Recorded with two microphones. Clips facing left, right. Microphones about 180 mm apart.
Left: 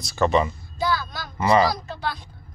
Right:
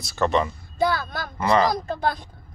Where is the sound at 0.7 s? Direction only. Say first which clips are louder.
Right 3 dB; 55° right (ahead or behind).